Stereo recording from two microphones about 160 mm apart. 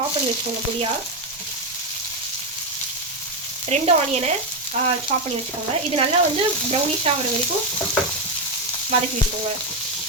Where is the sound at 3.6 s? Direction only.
40° right (ahead or behind).